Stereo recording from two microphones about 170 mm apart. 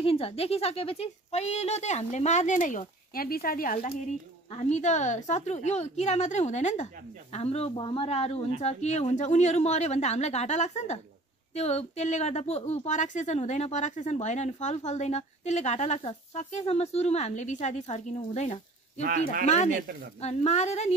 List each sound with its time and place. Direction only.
0.0 s a woman's voice: 35° left (ahead or behind); by 3.9 s 50° left (ahead or behind)
4.5 s a woman's voice: 40° left (ahead or behind)
18.9 s speech: 55° right (ahead or behind)
19.4 s a woman's voice: 40° left (ahead or behind)